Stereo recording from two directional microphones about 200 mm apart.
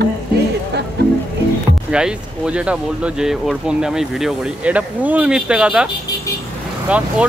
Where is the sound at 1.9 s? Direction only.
5° right (ahead or behind).